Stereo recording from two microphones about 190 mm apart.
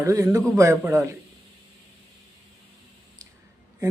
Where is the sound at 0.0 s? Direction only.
15° right (ahead or behind).